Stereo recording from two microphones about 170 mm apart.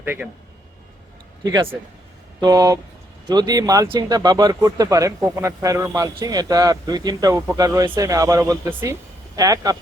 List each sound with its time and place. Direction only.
0.0 s a man's voice: 10° right (ahead or behind)
2.4 s speech: 20° right (ahead or behind)